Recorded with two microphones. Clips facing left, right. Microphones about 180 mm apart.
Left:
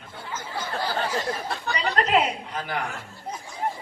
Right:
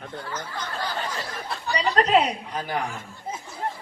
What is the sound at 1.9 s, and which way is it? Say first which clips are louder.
Speech: right 2 dB; 35° right (ahead or behind).